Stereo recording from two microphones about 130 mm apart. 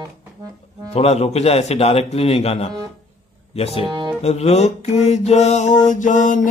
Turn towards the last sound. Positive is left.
turn(degrees=80)